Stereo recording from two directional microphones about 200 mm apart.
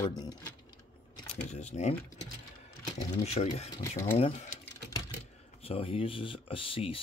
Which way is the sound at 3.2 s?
30° left (ahead or behind).